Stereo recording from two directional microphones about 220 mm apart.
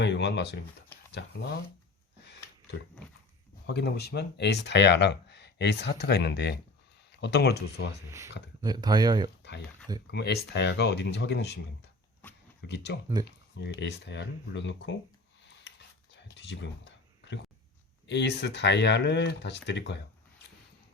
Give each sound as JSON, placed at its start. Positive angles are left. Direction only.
{"t": 0.0, "sound": "speech", "side_deg": 55}
{"t": 3.7, "sound": "speech", "side_deg": 50}
{"t": 8.6, "sound": "speech", "side_deg": -20}
{"t": 10.1, "sound": "speech", "side_deg": 50}
{"t": 12.6, "sound": "speech", "side_deg": 50}
{"t": 16.4, "sound": "a sound", "side_deg": 50}
{"t": 18.1, "sound": "speech", "side_deg": 50}